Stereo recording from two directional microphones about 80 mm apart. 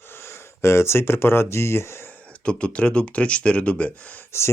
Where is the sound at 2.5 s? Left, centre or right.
Centre.